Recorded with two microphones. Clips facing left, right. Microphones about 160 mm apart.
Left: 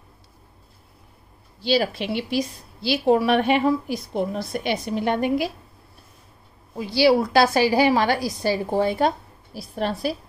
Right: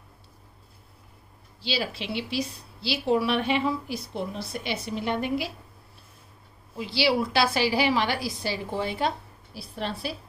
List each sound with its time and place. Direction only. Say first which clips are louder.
1.6 s a woman's voice: left 9 dB; 50° left (ahead or behind)
6.7 s a woman's voice: left 7 dB; 45° left (ahead or behind)